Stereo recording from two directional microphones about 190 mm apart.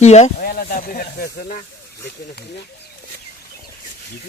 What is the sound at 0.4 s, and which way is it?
Speech, 50° left (ahead or behind).